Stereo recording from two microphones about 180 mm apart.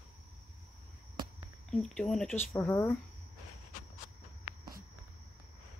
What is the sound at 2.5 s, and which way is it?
Speech, 15° left (ahead or behind).